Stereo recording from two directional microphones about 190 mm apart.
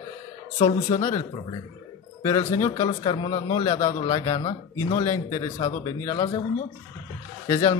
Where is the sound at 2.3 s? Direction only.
20° left (ahead or behind).